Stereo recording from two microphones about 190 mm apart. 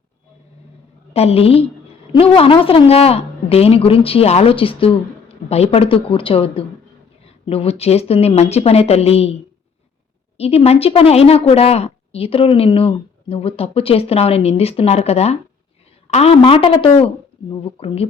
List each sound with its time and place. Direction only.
1.1 s a woman's voice: 30° left (ahead or behind)
10.3 s a woman's voice: 30° left (ahead or behind)